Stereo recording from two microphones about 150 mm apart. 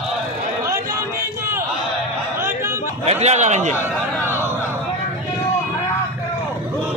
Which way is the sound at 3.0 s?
45° right (ahead or behind).